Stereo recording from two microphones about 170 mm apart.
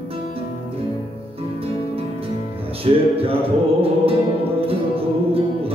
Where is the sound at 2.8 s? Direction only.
35° right (ahead or behind).